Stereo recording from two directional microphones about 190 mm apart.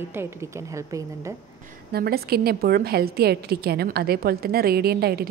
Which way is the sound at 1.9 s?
55° right (ahead or behind).